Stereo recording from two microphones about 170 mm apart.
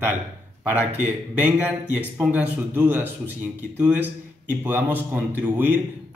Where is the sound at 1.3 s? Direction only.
10° right (ahead or behind).